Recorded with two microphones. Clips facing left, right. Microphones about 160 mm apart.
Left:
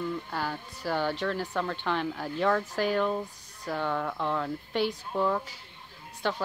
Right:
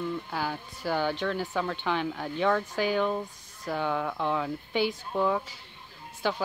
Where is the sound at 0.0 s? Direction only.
Centre (ahead or behind).